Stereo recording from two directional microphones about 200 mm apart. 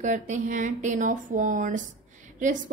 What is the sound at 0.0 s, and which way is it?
A woman's voice, 40° right (ahead or behind).